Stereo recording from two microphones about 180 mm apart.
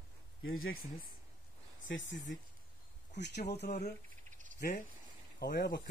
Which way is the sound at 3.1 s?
70° left (ahead or behind).